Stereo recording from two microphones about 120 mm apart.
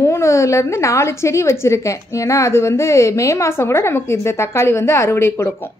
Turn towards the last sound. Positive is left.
turn(degrees=20)  # may be behind; listen again after turning